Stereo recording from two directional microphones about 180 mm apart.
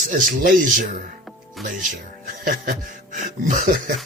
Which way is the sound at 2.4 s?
50° right (ahead or behind).